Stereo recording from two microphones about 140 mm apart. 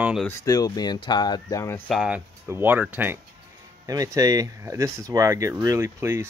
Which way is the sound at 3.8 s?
25° right (ahead or behind).